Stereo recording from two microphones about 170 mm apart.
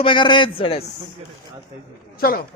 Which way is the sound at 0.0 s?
30° left (ahead or behind).